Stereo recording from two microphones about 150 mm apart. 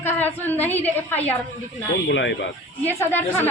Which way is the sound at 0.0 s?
15° left (ahead or behind).